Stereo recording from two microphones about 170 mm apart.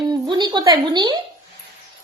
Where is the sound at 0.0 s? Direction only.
25° right (ahead or behind).